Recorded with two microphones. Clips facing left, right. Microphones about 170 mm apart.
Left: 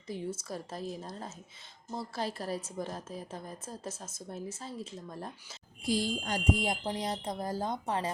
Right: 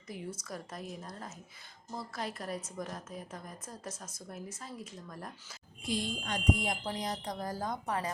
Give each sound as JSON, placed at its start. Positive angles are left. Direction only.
{"t": 0.1, "sound": "a woman's voice", "side_deg": 25}